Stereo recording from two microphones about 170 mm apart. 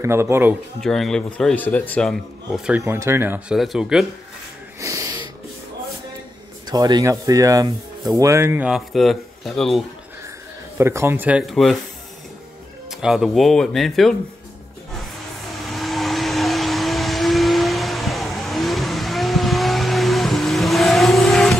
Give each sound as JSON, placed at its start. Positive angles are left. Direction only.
{"t": 0.0, "sound": "speech", "side_deg": -15}
{"t": 0.7, "sound": "a man's voice", "side_deg": 0}
{"t": 4.7, "sound": "wheeze", "side_deg": -20}
{"t": 6.7, "sound": "a man's voice", "side_deg": -20}
{"t": 10.8, "sound": "speech", "side_deg": -15}
{"t": 13.0, "sound": "a man's voice", "side_deg": 0}
{"t": 15.6, "sound": "vehicle", "side_deg": 0}